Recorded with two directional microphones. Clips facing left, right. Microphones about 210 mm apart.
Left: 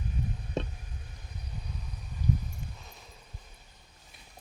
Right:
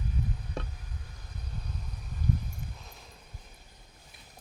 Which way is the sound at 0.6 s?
20° left (ahead or behind).